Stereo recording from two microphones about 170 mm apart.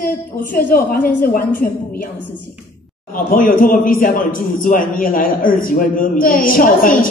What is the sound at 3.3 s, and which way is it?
A man's voice, 55° left (ahead or behind).